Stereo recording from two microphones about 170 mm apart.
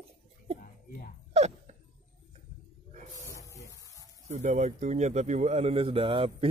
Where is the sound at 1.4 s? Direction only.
40° right (ahead or behind).